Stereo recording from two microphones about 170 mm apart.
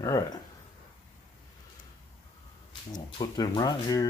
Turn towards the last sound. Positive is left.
turn(degrees=25)  # may be behind; listen again after turning